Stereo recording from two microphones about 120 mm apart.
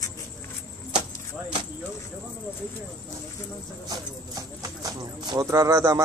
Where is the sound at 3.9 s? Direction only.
30° right (ahead or behind).